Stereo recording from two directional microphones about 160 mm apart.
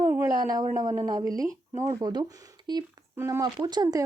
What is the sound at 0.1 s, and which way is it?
A woman's voice, 20° right (ahead or behind).